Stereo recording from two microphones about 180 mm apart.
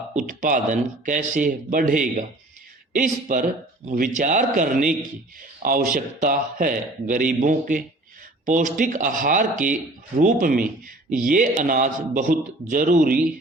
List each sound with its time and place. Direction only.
0.1 s a man's voice: 45° right (ahead or behind)